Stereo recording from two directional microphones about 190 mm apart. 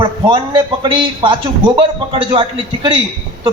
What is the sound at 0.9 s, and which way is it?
A man's voice, 25° right (ahead or behind).